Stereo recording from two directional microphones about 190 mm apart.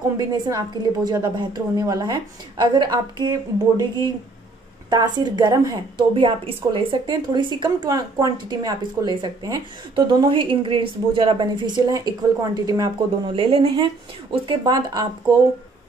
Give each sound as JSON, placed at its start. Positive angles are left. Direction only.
{"t": 0.3, "sound": "a woman's voice", "side_deg": -20}